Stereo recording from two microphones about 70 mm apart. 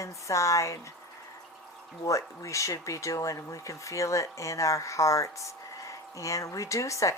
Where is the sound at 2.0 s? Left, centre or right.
Left.